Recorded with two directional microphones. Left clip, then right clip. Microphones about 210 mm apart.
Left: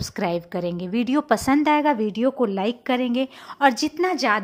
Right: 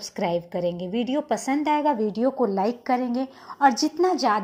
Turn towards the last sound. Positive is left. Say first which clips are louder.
# even
turn(degrees=15)  # may be behind; listen again after turning